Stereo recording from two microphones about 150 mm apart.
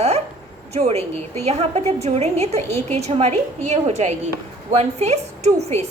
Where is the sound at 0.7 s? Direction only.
45° right (ahead or behind).